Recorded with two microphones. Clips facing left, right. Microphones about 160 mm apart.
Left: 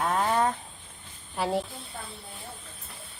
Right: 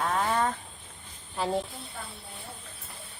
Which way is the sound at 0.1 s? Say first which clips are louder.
Left 3 dB; 15° left (ahead or behind).